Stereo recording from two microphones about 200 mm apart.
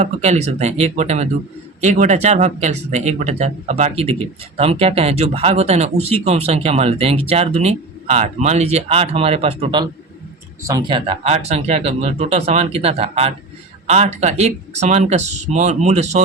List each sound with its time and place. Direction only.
0.0 s speech: 35° right (ahead or behind)